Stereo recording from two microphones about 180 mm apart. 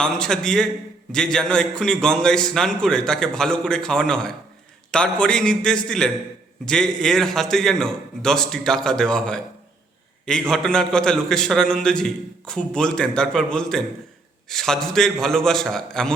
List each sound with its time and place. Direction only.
0.0 s a man's voice: 5° left (ahead or behind)